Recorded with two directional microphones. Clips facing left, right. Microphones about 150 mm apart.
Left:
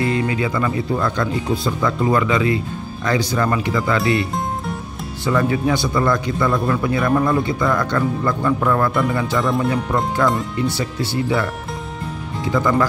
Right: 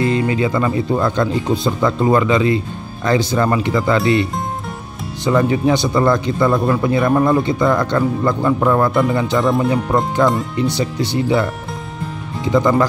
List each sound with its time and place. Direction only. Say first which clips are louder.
0.0 s speech: right 3 dB; 25° right (ahead or behind)
12.5 s speech: right 4 dB; 25° right (ahead or behind)